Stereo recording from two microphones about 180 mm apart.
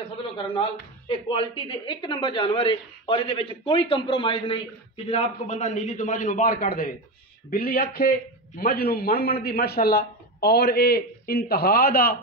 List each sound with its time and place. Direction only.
0.6 s a man's voice: 30° left (ahead or behind); by 12.2 s 55° left (ahead or behind)